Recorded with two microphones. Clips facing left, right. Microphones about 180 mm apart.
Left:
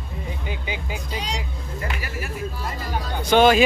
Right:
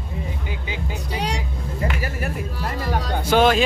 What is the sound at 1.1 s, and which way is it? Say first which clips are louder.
Speech: right 5 dB; 65° right (ahead or behind).